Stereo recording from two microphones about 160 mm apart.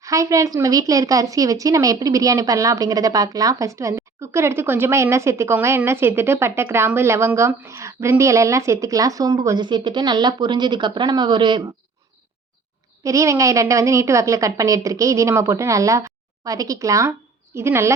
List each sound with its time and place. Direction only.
0.0 s a woman's voice: 20° right (ahead or behind)
13.0 s a woman's voice: 20° right (ahead or behind)